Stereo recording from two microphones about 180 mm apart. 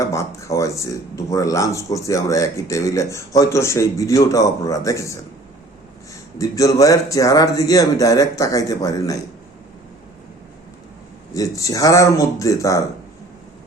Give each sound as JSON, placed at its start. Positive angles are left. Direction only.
{"t": 0.0, "sound": "speech", "side_deg": 15}
{"t": 6.4, "sound": "speech", "side_deg": 20}
{"t": 11.3, "sound": "speech", "side_deg": 20}